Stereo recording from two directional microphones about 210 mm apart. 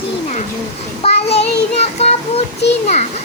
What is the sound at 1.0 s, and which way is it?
Child singing, 30° left (ahead or behind).